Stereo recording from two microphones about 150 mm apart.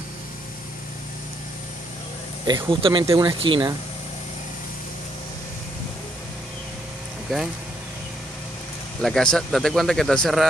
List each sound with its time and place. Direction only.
2.4 s speech: 30° right (ahead or behind)
9.0 s speech: 5° left (ahead or behind)